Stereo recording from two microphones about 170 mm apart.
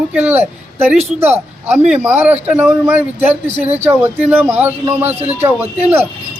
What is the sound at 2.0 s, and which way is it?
A man's voice, 10° right (ahead or behind).